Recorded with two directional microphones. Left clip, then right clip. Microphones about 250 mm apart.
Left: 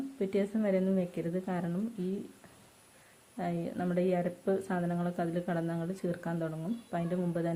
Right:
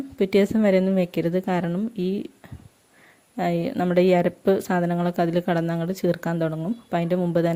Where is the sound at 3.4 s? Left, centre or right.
Right.